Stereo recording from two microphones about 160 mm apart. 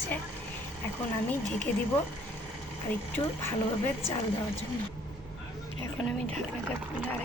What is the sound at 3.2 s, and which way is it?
Speech, 30° left (ahead or behind).